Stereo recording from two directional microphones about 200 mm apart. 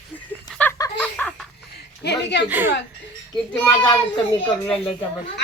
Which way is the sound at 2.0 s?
55° left (ahead or behind).